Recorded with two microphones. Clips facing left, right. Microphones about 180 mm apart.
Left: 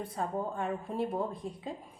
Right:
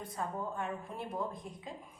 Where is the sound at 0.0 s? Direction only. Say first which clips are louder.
Left 4 dB; 30° left (ahead or behind).